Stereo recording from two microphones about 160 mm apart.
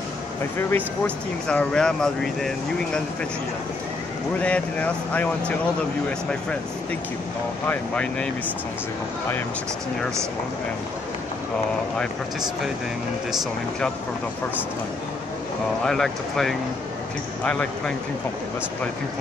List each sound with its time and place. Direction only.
0.6 s speech: 10° left (ahead or behind)
4.4 s speech: 10° left (ahead or behind)
7.6 s speech: 10° left (ahead or behind)
12.0 s speech: 5° right (ahead or behind)
15.8 s speech: centre (ahead or behind)